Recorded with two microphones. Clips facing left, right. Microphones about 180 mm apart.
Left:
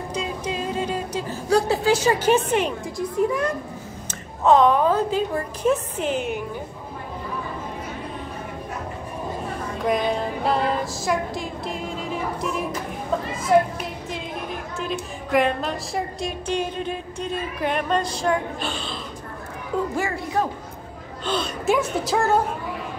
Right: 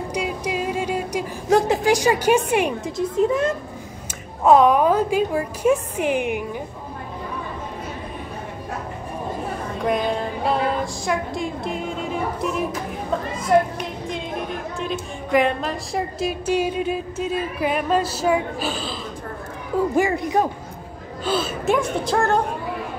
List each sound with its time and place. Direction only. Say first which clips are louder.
0.1 s music: right 2 dB; 10° right (ahead or behind)
3.0 s a woman's voice: right 3 dB; 25° right (ahead or behind)
4.1 s a woman's voice: right 2 dB; 10° right (ahead or behind)
9.8 s a sound: even; centre (ahead or behind)
13.5 s a woman's voice: even; 5° left (ahead or behind)
20.0 s a woman's voice: right 5 dB; 15° right (ahead or behind)
21.2 s a woman's voice: right 3 dB; 5° right (ahead or behind)